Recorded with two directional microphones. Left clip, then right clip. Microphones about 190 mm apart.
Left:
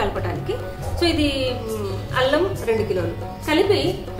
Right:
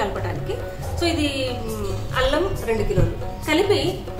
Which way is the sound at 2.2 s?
5° left (ahead or behind).